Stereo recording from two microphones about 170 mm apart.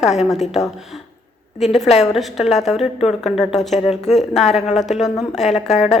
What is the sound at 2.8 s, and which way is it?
Speech, 40° left (ahead or behind).